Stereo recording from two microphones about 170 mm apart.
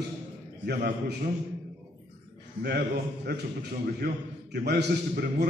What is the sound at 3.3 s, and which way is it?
A man's voice, 70° right (ahead or behind).